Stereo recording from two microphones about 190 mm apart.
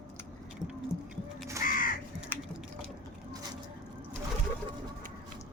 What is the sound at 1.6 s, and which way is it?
Crow, 45° left (ahead or behind).